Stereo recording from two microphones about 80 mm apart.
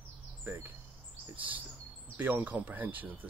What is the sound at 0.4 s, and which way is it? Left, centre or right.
Speech, right.